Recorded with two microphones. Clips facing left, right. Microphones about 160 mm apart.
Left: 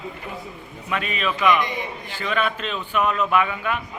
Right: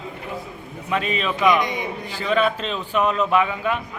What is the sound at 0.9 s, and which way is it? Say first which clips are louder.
A man's voice: right 2 dB; 30° right (ahead or behind).